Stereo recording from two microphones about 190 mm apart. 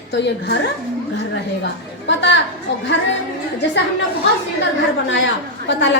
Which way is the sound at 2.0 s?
65° left (ahead or behind).